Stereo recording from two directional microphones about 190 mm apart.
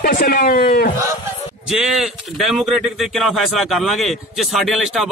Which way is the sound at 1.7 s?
Centre (ahead or behind).